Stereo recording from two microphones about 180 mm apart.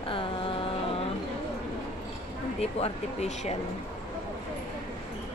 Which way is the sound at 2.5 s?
35° left (ahead or behind).